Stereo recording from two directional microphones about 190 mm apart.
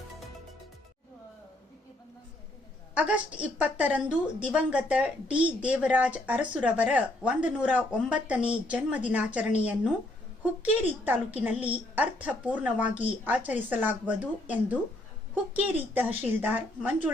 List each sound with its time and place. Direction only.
2.9 s a woman's voice: 5° right (ahead or behind)
10.6 s a woman's voice: 10° right (ahead or behind)
12.8 s a woman's voice: 40° left (ahead or behind)
13.2 s a woman's voice: 10° right (ahead or behind)